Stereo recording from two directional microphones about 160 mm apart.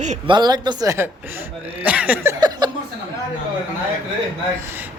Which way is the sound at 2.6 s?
25° right (ahead or behind).